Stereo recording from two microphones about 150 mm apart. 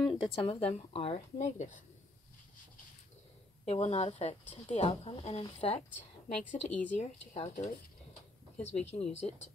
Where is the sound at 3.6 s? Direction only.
45° left (ahead or behind).